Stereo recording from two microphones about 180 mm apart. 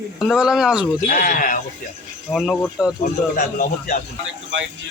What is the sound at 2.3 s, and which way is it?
Speech, centre (ahead or behind).